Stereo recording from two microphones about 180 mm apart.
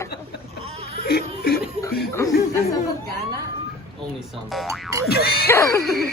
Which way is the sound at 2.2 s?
15° left (ahead or behind).